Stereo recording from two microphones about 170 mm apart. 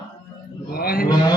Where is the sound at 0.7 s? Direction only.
60° left (ahead or behind).